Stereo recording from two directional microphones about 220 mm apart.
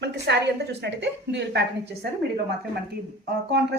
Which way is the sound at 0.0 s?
50° right (ahead or behind).